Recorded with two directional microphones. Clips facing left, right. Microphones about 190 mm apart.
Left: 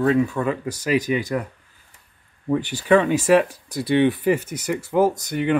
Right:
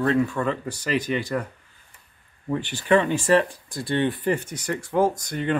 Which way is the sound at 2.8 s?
10° left (ahead or behind).